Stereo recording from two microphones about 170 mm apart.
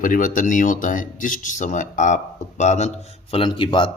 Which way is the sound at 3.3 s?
30° left (ahead or behind).